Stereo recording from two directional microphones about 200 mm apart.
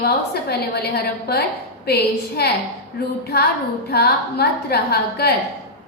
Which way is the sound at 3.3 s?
55° left (ahead or behind).